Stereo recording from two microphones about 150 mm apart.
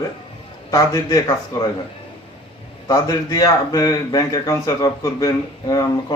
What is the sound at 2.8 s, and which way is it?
Speech, 25° left (ahead or behind).